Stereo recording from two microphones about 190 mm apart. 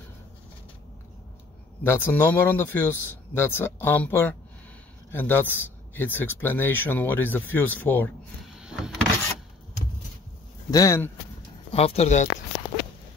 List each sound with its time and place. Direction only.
1.8 s speech: 10° left (ahead or behind)
8.5 s power windows: 5° right (ahead or behind)
10.7 s speech: 15° left (ahead or behind)
11.7 s speech: 30° left (ahead or behind)